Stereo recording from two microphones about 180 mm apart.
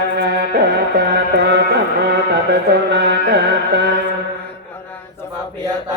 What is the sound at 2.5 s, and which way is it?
Music, 70° right (ahead or behind).